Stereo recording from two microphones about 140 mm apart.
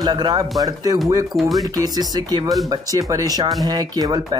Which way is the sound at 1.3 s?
Centre (ahead or behind).